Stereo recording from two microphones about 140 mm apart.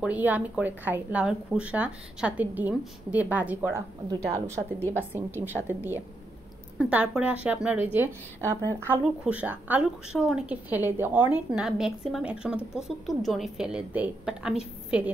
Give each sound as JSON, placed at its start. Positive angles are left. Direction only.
{"t": 0.0, "sound": "a woman's voice", "side_deg": -10}
{"t": 4.1, "sound": "a woman's voice", "side_deg": -25}
{"t": 4.7, "sound": "a woman's voice", "side_deg": 15}
{"t": 5.1, "sound": "a woman's voice", "side_deg": -15}